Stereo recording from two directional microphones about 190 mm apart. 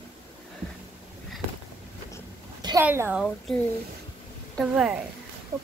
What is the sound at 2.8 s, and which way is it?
Speech, 10° right (ahead or behind).